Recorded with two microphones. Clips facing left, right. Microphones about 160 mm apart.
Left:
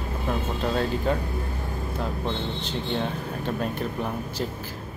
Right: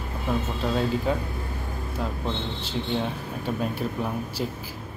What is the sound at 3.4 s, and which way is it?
Speech, 10° right (ahead or behind).